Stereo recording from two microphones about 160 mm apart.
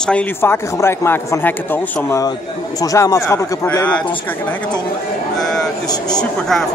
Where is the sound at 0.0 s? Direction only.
10° left (ahead or behind).